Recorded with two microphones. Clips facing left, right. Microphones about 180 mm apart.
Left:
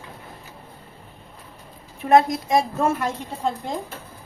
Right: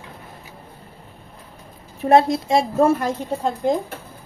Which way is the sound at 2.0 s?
30° right (ahead or behind).